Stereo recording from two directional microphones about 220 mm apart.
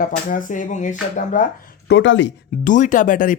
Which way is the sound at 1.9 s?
55° left (ahead or behind).